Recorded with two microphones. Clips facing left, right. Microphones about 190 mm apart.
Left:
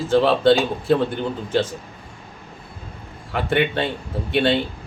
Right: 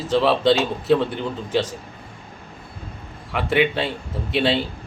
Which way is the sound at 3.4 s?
5° right (ahead or behind).